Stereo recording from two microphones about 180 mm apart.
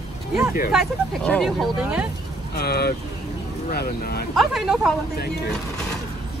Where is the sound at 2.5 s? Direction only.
60° left (ahead or behind).